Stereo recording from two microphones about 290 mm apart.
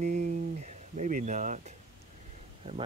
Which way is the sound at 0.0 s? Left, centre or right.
Right.